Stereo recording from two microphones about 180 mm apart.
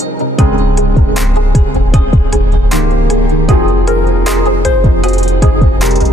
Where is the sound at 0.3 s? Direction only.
Centre (ahead or behind).